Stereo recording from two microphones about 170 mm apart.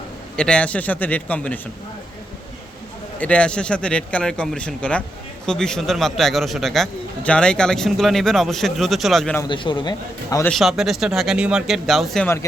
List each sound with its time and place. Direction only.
0.3 s speech: 5° left (ahead or behind)
3.2 s a man's voice: 5° left (ahead or behind)
9.5 s a man's voice: 25° left (ahead or behind)
10.5 s a man's voice: centre (ahead or behind)